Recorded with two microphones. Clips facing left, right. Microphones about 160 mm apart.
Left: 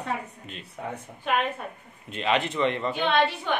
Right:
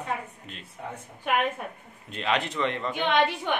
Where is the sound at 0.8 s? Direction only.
65° left (ahead or behind).